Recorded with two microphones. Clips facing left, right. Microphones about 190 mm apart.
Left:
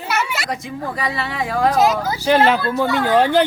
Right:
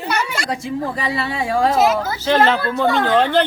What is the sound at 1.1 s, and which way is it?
Speech, 30° right (ahead or behind).